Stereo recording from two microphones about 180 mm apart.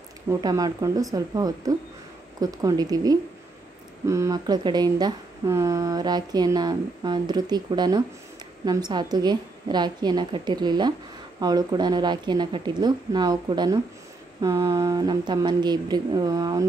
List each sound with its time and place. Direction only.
0.3 s a woman's voice: 20° right (ahead or behind)